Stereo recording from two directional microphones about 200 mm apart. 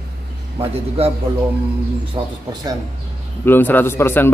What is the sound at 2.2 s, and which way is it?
Speech, 25° right (ahead or behind).